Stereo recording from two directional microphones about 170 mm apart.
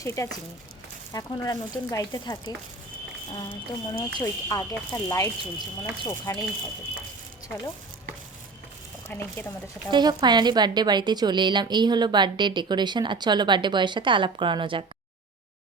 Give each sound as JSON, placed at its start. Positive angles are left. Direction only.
{"t": 0.0, "sound": "speech", "side_deg": 15}
{"t": 3.5, "sound": "speech", "side_deg": 20}
{"t": 9.1, "sound": "speech", "side_deg": 10}
{"t": 9.9, "sound": "a woman's voice", "side_deg": -25}